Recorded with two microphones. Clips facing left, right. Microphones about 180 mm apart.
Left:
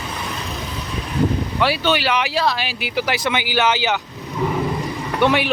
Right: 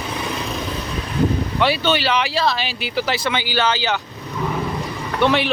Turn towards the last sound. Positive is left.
turn(degrees=10)  # may be behind; listen again after turning